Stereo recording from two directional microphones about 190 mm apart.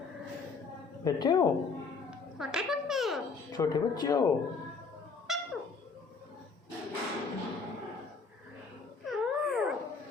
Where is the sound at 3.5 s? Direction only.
20° left (ahead or behind).